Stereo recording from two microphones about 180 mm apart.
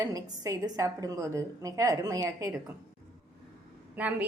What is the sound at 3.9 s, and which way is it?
Speech, 10° right (ahead or behind).